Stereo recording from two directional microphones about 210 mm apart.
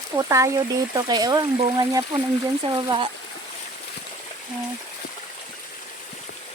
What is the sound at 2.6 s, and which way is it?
Speech, 20° right (ahead or behind).